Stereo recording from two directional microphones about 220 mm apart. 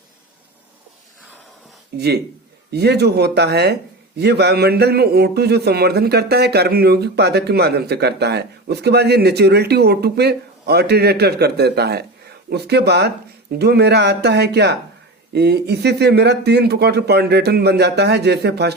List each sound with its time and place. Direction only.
1.9 s a man's voice: 45° right (ahead or behind)